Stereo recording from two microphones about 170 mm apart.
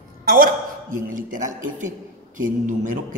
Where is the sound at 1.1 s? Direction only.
50° right (ahead or behind).